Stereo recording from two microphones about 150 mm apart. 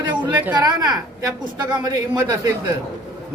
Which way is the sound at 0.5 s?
25° right (ahead or behind).